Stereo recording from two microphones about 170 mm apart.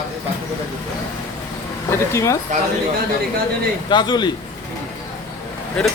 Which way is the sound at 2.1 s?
15° left (ahead or behind).